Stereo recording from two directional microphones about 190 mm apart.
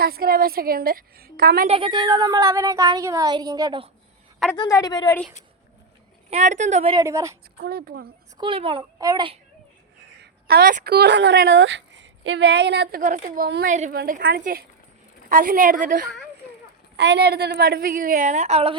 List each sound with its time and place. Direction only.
0.0 s a woman's voice: 50° right (ahead or behind)
1.6 s a woman's voice: 30° right (ahead or behind)
4.5 s a woman's voice: 20° left (ahead or behind)
6.3 s a woman's voice: 40° right (ahead or behind)
6.9 s speech: 15° right (ahead or behind)
7.6 s a woman's voice: 55° right (ahead or behind)
8.4 s a woman's voice: 30° right (ahead or behind)
10.2 s a woman's voice: 55° right (ahead or behind)
17.0 s a woman's voice: 60° right (ahead or behind); by 18.8 s 30° right (ahead or behind)